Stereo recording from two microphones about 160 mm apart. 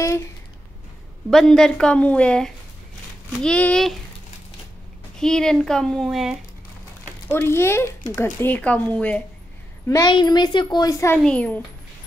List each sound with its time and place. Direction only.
0.0 s a sound: 20° left (ahead or behind)
1.3 s a woman's voice: centre (ahead or behind)
5.2 s a woman's voice: 5° left (ahead or behind)
7.2 s speech: 15° left (ahead or behind)
9.8 s a woman's voice: 25° left (ahead or behind)
11.2 s speech: 10° left (ahead or behind)